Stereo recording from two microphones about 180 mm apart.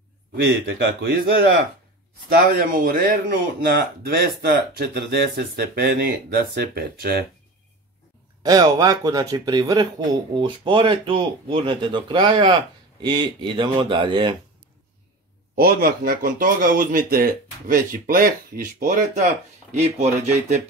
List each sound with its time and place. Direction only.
0.5 s speech: 70° right (ahead or behind)
2.4 s speech: 50° right (ahead or behind)
8.4 s speech: 20° right (ahead or behind)
15.5 s speech: 55° right (ahead or behind); by 20.6 s 40° right (ahead or behind)